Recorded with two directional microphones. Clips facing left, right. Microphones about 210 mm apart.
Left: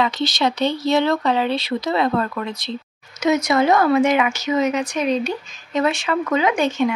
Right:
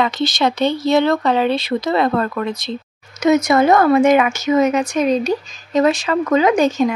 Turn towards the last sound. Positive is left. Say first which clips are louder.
# right 4 dB
turn(degrees=-40)  # may be behind; listen again after turning